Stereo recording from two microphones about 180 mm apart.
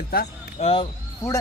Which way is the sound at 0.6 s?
35° left (ahead or behind).